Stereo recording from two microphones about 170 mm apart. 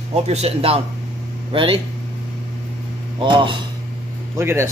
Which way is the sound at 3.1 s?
25° right (ahead or behind).